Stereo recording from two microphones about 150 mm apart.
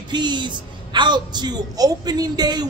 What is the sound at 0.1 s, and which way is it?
A man's voice, 30° right (ahead or behind).